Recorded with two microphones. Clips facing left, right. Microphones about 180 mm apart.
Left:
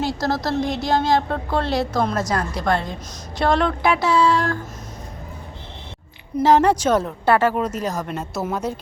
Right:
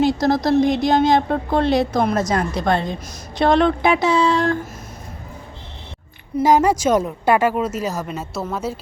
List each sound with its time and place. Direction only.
0.0 s a woman's voice: 20° right (ahead or behind)
6.4 s a woman's voice: 10° right (ahead or behind)